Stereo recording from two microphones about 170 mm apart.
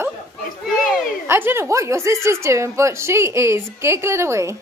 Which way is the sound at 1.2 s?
15° right (ahead or behind).